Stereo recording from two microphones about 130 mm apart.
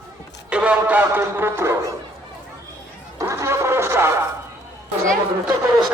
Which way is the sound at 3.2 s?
20° right (ahead or behind).